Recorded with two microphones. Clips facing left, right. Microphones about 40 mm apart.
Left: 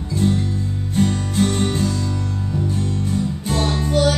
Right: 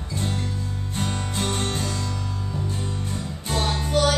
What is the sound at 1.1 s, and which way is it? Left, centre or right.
Music, centre.